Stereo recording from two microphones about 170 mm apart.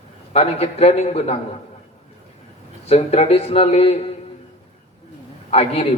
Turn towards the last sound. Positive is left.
turn(degrees=35)  # may be behind; listen again after turning